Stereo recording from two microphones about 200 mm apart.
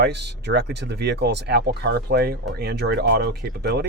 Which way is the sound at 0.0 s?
60° right (ahead or behind).